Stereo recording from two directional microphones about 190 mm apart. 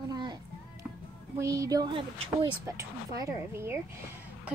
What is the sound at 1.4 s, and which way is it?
A woman's voice, 15° right (ahead or behind).